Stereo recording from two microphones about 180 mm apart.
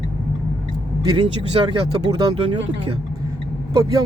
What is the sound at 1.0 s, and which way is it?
Speech, 25° right (ahead or behind).